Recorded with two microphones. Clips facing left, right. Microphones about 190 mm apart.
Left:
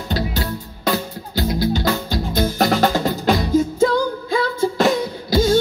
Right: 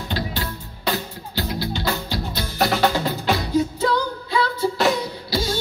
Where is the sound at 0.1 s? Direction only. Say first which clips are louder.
Left 5 dB; 40° left (ahead or behind).